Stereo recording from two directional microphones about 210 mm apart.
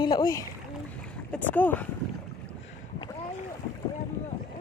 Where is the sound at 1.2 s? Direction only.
10° left (ahead or behind).